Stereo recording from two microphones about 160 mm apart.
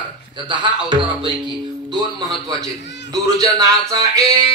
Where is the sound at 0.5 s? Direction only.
30° right (ahead or behind).